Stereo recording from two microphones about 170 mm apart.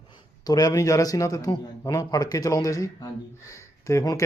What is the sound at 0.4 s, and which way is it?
A man's voice, 25° left (ahead or behind).